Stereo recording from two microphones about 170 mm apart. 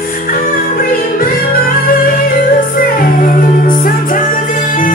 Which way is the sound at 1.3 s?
60° left (ahead or behind).